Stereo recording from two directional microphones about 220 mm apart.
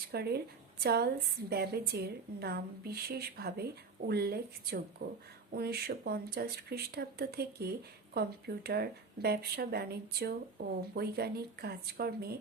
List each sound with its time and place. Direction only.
0.1 s a woman's voice: 45° right (ahead or behind)